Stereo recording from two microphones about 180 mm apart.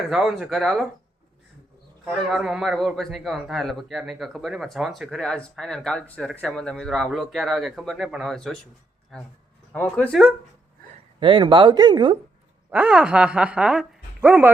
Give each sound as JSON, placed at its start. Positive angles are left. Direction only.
{"t": 0.1, "sound": "a man's voice", "side_deg": 0}
{"t": 2.0, "sound": "a man's voice", "side_deg": 0}
{"t": 11.2, "sound": "speech", "side_deg": -30}
{"t": 12.7, "sound": "speech", "side_deg": -5}